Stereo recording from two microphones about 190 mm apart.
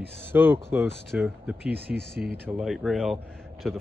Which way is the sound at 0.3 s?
10° right (ahead or behind).